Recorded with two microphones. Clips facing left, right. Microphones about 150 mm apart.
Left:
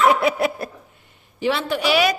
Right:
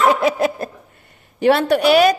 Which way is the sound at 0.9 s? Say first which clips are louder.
Right 5 dB; 65° right (ahead or behind).